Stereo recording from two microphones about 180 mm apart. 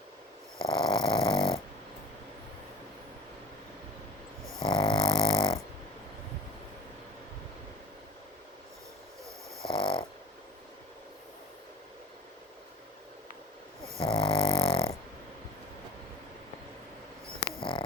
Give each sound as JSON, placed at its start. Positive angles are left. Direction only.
{"t": 0.6, "sound": "dog", "side_deg": 30}
{"t": 4.6, "sound": "dog", "side_deg": 25}
{"t": 9.6, "sound": "dog", "side_deg": 30}
{"t": 14.0, "sound": "dog", "side_deg": 30}
{"t": 17.6, "sound": "hum", "side_deg": 30}